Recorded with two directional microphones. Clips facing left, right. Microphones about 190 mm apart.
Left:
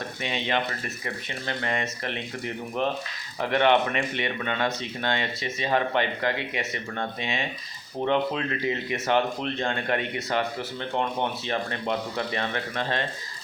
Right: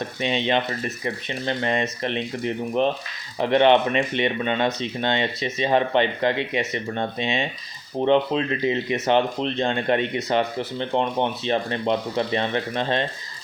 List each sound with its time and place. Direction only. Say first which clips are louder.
0.2 s speech: right 5 dB; 25° right (ahead or behind)